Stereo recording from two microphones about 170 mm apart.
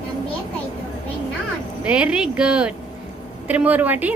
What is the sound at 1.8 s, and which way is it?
A woman's voice, 5° right (ahead or behind).